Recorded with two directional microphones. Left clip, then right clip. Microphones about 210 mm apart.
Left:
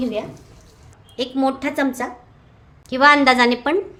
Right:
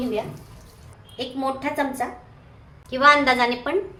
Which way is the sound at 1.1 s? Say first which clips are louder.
Left 6 dB; 55° left (ahead or behind).